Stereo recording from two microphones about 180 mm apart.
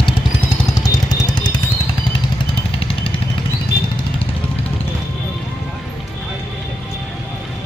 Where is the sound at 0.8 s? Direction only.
20° left (ahead or behind).